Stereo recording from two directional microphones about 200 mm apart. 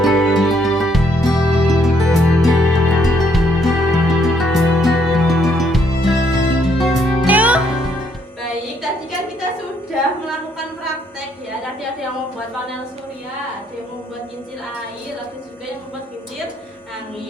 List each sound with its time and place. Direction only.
0.0 s music: centre (ahead or behind)